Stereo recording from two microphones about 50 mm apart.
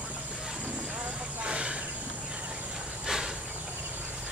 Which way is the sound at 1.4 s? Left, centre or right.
Right.